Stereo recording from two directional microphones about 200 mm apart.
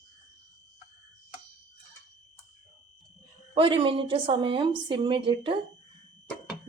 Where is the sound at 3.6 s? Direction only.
25° right (ahead or behind).